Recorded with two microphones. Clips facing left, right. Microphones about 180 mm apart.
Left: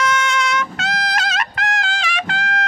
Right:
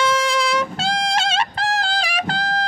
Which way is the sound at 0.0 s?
35° right (ahead or behind).